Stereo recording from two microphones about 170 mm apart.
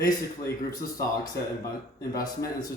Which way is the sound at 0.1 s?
20° left (ahead or behind).